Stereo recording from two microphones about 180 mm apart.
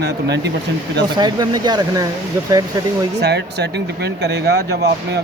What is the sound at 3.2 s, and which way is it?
Speech, 70° right (ahead or behind).